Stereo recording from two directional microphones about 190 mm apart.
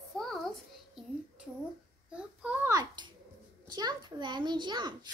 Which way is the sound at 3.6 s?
20° right (ahead or behind).